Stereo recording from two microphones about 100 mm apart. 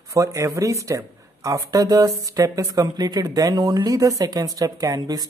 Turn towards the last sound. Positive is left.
turn(degrees=-40)  # may be behind; listen again after turning